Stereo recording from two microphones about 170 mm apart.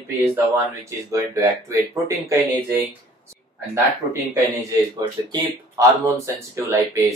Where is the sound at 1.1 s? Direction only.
20° right (ahead or behind).